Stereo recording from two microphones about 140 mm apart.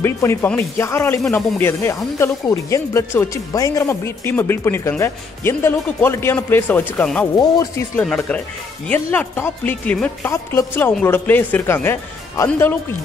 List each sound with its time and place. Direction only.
0.0 s speech: 20° left (ahead or behind)
7.3 s speech: 25° left (ahead or behind)
8.8 s speech: 10° left (ahead or behind)